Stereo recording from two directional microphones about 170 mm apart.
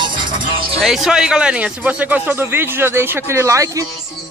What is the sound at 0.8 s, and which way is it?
A man's voice, centre (ahead or behind).